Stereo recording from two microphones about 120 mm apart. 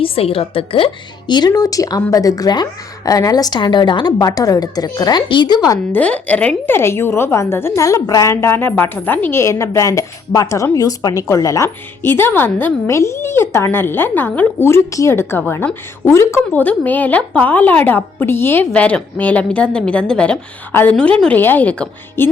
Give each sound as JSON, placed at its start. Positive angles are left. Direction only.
{"t": 0.0, "sound": "a woman's voice", "side_deg": 50}
{"t": 1.3, "sound": "speech", "side_deg": 35}
{"t": 5.9, "sound": "a woman's voice", "side_deg": 10}